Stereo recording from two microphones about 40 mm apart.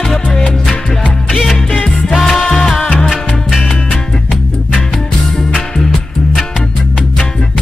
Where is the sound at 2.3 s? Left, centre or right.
Centre.